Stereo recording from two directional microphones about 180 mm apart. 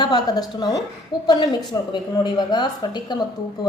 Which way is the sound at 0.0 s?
25° left (ahead or behind).